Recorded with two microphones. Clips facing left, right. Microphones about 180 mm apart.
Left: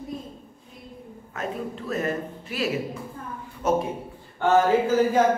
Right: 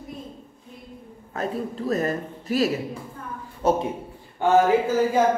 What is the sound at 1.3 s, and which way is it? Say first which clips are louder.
Speech: right 3 dB; 35° right (ahead or behind).